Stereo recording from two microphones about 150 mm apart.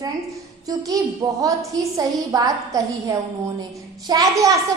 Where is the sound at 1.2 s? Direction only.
25° right (ahead or behind).